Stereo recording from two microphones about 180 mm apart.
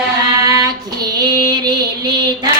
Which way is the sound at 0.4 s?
20° right (ahead or behind).